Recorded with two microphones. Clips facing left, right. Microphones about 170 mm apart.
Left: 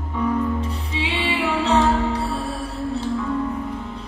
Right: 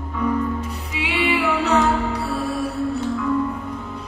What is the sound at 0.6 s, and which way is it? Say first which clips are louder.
Music: left 2 dB; 30° left (ahead or behind).